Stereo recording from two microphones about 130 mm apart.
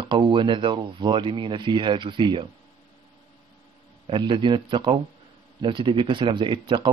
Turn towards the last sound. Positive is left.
turn(degrees=-40)  # may be behind; listen again after turning